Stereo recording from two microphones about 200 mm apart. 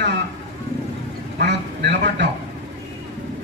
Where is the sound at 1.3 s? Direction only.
60° right (ahead or behind).